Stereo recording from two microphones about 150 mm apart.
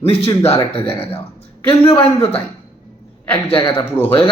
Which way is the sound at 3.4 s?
35° left (ahead or behind).